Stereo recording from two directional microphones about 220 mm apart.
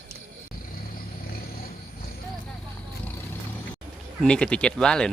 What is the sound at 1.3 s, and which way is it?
Vehicle, 40° left (ahead or behind).